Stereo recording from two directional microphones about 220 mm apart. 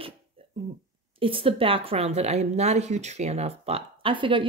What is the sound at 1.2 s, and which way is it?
Speech, 25° right (ahead or behind).